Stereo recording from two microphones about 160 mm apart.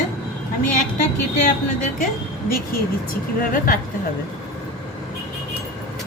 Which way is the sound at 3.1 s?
60° left (ahead or behind).